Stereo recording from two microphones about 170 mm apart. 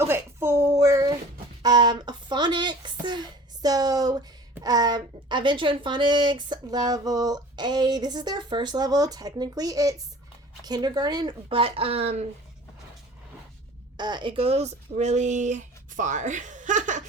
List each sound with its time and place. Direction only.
0.0 s a sound: 15° right (ahead or behind)
10.6 s speech: 25° right (ahead or behind)
13.9 s speech: 25° right (ahead or behind); by 17.0 s 45° right (ahead or behind)